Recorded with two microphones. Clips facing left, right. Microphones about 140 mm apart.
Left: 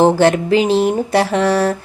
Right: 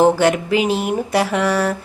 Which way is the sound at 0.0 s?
30° left (ahead or behind).